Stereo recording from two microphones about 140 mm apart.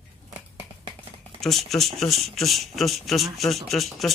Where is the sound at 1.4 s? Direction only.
Centre (ahead or behind).